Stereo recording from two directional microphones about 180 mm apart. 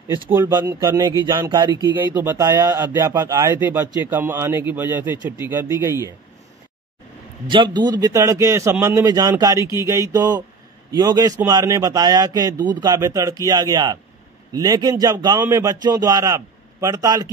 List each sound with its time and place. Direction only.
0.3 s a man's voice: 10° right (ahead or behind)
7.4 s a man's voice: 25° right (ahead or behind)